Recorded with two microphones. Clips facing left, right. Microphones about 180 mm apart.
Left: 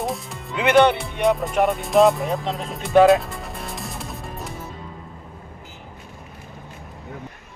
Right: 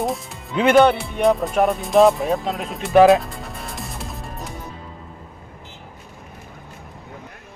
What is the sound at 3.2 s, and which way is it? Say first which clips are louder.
Music: right 1 dB; centre (ahead or behind).